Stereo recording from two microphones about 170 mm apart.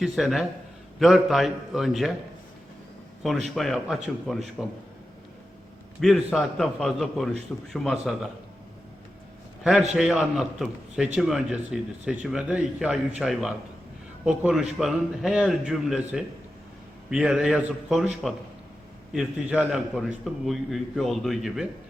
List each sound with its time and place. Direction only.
0.0 s a man's voice: centre (ahead or behind)
3.2 s a man's voice: centre (ahead or behind)
6.0 s a man's voice: centre (ahead or behind)
9.9 s a man's voice: 5° right (ahead or behind)